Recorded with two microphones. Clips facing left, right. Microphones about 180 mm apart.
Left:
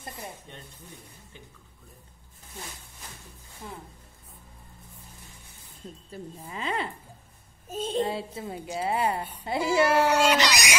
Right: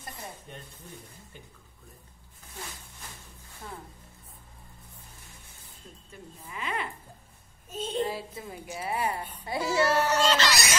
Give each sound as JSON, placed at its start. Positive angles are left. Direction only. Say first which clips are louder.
{"t": 6.1, "sound": "a woman's voice", "louder": "left 4 dB", "side_deg": 30}
{"t": 7.7, "sound": "a child's voice", "louder": "left 3 dB", "side_deg": 45}
{"t": 8.0, "sound": "a woman's voice", "louder": "left 2 dB", "side_deg": 30}
{"t": 9.2, "sound": "speech", "louder": "left 3 dB", "side_deg": 10}